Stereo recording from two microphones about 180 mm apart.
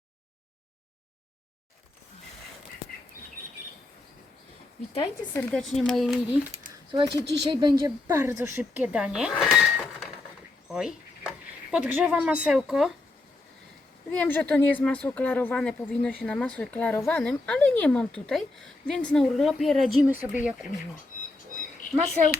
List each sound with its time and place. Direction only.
5.3 s speech: 5° left (ahead or behind)
6.9 s a woman's voice: 25° right (ahead or behind)
8.0 s speech: 15° right (ahead or behind)
9.3 s a sound: 5° right (ahead or behind)
10.7 s speech: centre (ahead or behind)
14.1 s a woman's voice: 10° left (ahead or behind); by 20.7 s 5° right (ahead or behind)